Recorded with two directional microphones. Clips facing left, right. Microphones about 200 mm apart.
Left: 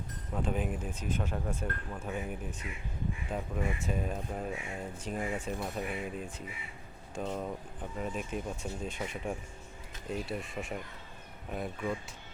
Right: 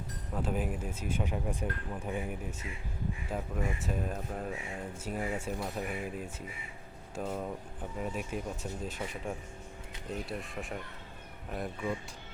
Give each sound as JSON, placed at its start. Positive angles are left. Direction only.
{"t": 0.3, "sound": "speech", "side_deg": -5}
{"t": 2.5, "sound": "speech", "side_deg": -25}
{"t": 3.2, "sound": "speech", "side_deg": 0}